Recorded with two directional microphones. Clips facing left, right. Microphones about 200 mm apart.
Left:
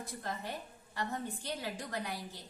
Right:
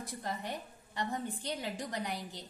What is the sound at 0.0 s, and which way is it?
A woman's voice, 15° right (ahead or behind).